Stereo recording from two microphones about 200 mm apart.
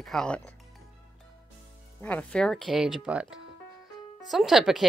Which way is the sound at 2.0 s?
5° left (ahead or behind).